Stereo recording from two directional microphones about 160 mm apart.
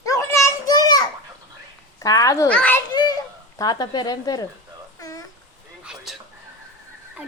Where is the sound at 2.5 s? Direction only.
10° left (ahead or behind).